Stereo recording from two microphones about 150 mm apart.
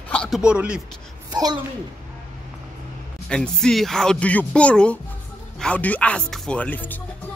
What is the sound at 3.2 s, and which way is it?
Speech, 5° left (ahead or behind).